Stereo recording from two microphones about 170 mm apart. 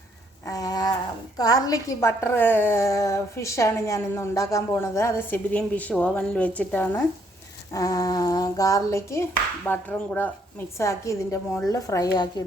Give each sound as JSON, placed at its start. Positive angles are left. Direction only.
{"t": 0.4, "sound": "a sound", "side_deg": 20}
{"t": 1.4, "sound": "a woman's voice", "side_deg": 20}
{"t": 7.7, "sound": "a woman's voice", "side_deg": 20}